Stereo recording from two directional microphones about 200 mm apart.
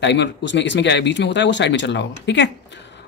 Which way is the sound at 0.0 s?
60° left (ahead or behind).